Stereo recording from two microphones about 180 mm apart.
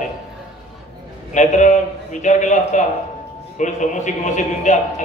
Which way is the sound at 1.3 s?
40° left (ahead or behind).